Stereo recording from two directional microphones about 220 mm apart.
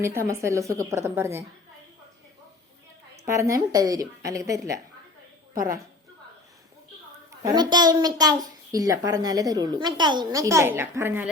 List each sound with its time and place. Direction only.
0.0 s a child's voice: 10° right (ahead or behind)
3.2 s a child's voice: 15° right (ahead or behind)
5.5 s a woman's voice: 40° right (ahead or behind)
7.3 s a child's voice: 15° right (ahead or behind)